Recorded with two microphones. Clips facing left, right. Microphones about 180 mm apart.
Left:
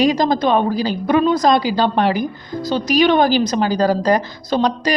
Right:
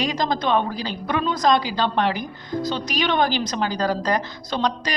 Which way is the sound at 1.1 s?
45° left (ahead or behind).